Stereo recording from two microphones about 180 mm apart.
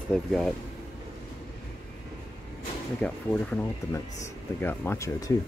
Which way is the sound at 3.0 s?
10° left (ahead or behind).